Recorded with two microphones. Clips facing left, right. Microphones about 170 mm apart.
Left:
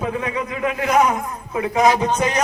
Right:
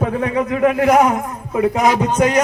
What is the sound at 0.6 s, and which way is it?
Speech, 55° right (ahead or behind).